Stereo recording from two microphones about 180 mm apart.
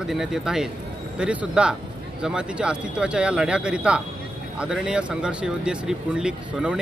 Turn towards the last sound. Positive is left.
turn(degrees=-5)  # may be behind; listen again after turning